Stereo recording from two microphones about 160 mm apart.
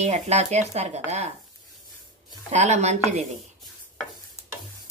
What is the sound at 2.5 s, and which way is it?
Speech, 45° right (ahead or behind).